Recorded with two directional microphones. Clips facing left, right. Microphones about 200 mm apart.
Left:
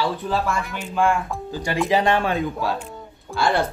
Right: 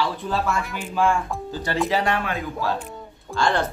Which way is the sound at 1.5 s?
15° left (ahead or behind).